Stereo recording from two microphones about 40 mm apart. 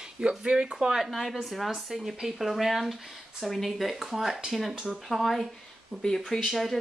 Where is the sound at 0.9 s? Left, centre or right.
Centre.